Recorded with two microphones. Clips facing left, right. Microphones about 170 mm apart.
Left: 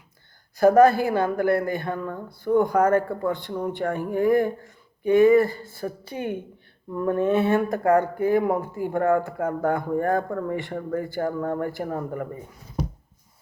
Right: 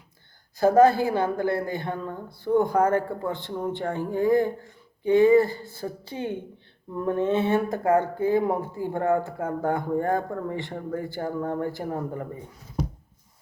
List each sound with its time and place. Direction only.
0.6 s speech: 20° right (ahead or behind)